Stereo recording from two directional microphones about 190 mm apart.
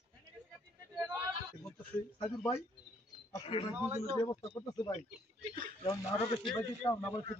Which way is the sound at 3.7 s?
10° right (ahead or behind).